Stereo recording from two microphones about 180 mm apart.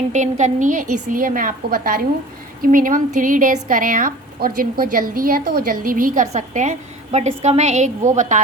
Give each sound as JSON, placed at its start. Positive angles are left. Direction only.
{"t": 0.1, "sound": "speech", "side_deg": -40}